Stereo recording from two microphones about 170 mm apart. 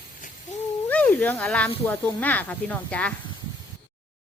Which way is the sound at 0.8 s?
10° left (ahead or behind).